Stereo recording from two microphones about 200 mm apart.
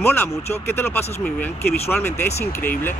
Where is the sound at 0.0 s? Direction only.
10° left (ahead or behind).